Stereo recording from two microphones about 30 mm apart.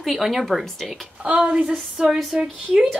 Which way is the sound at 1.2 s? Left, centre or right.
Right.